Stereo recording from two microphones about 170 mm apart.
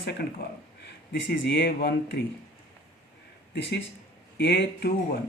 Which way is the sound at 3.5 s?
90° left.